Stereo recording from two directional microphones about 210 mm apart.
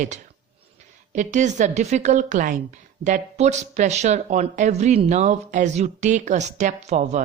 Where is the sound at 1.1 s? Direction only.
35° right (ahead or behind).